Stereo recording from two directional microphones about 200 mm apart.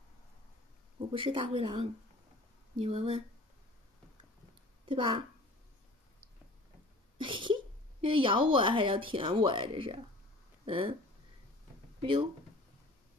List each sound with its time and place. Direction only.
0.9 s speech: 25° right (ahead or behind)
4.8 s a woman's voice: 25° right (ahead or behind)
7.2 s a sound: 25° right (ahead or behind)
8.0 s speech: 25° right (ahead or behind)
12.0 s speech: 25° right (ahead or behind)